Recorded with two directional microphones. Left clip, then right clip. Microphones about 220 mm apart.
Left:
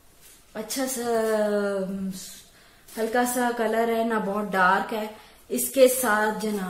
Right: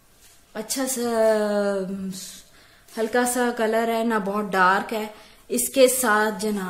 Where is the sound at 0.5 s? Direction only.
50° right (ahead or behind).